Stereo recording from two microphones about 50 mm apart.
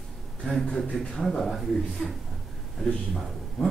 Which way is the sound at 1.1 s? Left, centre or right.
Centre.